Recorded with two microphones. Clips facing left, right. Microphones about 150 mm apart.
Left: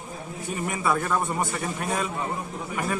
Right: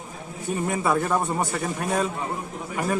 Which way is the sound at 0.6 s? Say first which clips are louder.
Right 2 dB; 35° right (ahead or behind).